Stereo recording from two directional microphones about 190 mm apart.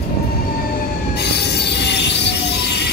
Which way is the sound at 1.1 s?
60° left (ahead or behind).